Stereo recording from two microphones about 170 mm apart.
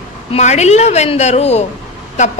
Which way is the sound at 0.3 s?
40° left (ahead or behind).